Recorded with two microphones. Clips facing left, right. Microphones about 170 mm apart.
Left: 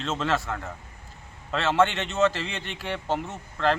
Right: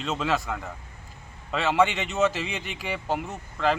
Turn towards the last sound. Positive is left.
turn(degrees=-5)  # may be behind; listen again after turning